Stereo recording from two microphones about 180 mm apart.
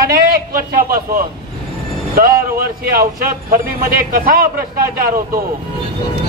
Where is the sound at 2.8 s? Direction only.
55° right (ahead or behind).